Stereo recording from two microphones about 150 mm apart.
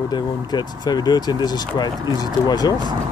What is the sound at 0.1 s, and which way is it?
Speech, 30° left (ahead or behind).